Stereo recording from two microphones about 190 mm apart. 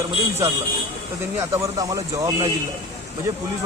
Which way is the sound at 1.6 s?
20° right (ahead or behind).